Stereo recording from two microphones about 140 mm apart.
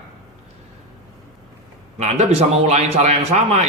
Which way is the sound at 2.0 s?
55° right (ahead or behind).